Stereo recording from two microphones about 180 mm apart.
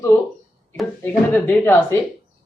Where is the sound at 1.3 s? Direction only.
10° left (ahead or behind).